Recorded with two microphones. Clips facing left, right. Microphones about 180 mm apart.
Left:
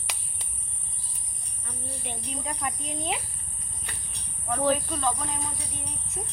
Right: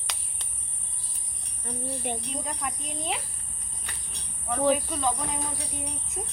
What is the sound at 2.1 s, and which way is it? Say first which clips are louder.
Speech: right 6 dB; 50° right (ahead or behind).